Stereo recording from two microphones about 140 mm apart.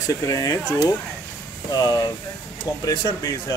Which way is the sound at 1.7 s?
30° left (ahead or behind).